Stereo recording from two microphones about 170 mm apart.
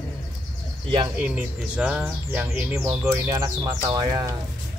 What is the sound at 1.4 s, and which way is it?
Speech, 5° right (ahead or behind).